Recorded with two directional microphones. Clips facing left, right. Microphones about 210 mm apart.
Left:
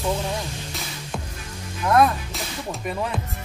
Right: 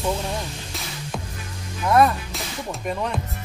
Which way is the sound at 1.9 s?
Centre (ahead or behind).